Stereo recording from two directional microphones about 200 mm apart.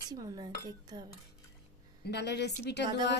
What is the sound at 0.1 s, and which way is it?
Speech, 20° right (ahead or behind).